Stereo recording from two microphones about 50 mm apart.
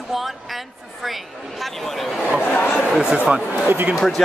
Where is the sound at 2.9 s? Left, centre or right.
Centre.